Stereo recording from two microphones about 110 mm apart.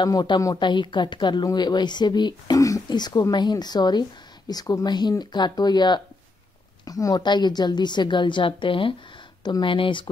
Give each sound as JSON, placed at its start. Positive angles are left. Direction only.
{"t": 0.0, "sound": "a woman's voice", "side_deg": 40}
{"t": 0.6, "sound": "a woman's voice", "side_deg": 45}